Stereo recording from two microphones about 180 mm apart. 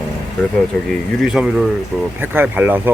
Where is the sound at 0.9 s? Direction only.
5° right (ahead or behind).